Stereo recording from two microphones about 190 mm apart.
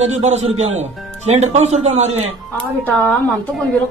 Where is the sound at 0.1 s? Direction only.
35° right (ahead or behind).